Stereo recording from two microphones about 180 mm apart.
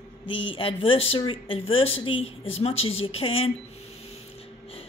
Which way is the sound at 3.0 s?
30° left (ahead or behind).